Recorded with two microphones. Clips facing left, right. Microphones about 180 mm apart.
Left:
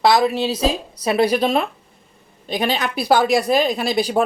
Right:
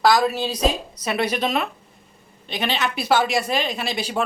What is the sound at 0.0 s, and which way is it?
A woman's voice, 20° left (ahead or behind).